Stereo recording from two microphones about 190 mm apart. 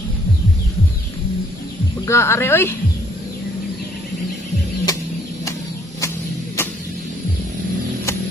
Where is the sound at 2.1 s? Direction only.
15° left (ahead or behind).